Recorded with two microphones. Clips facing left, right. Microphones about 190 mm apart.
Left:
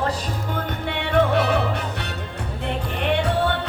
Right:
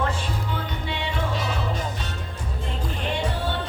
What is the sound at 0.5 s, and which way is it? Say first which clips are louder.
Music: left 4 dB; 55° left (ahead or behind).